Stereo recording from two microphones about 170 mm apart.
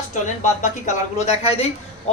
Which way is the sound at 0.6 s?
45° left (ahead or behind).